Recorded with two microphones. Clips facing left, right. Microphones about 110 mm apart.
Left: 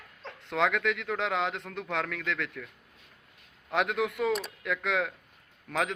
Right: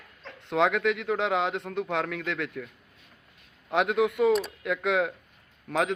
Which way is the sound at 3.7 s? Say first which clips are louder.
Right 4 dB; 5° right (ahead or behind).